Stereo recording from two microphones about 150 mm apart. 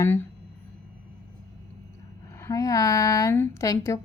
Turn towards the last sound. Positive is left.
turn(degrees=20)  # may be behind; listen again after turning